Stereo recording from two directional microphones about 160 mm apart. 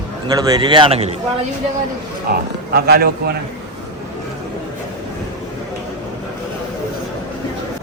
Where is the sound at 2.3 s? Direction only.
80° right.